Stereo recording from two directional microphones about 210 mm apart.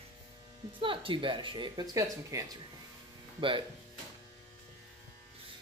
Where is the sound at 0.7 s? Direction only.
25° right (ahead or behind).